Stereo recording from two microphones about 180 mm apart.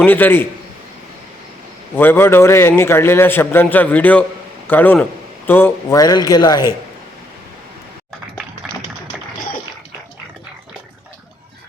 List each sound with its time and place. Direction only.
0.0 s a man's voice: 10° left (ahead or behind)
2.0 s a man's voice: 10° left (ahead or behind)
8.6 s tap: 5° right (ahead or behind)